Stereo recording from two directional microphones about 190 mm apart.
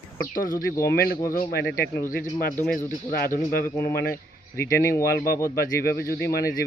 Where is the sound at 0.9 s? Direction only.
55° left (ahead or behind).